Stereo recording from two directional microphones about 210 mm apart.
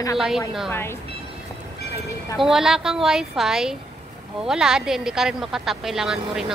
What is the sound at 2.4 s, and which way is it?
Speech, centre (ahead or behind).